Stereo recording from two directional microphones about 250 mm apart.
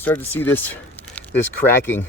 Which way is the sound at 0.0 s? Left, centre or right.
Centre.